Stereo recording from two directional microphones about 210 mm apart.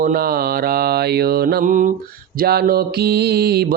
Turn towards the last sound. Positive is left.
turn(degrees=-50)  # may be behind; listen again after turning